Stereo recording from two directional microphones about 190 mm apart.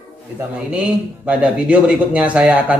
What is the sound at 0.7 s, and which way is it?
Speech, 5° right (ahead or behind).